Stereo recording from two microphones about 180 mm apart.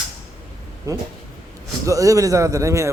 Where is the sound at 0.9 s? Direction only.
15° right (ahead or behind).